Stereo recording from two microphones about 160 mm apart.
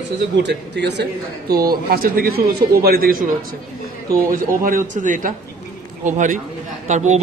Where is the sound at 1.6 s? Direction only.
65° right (ahead or behind).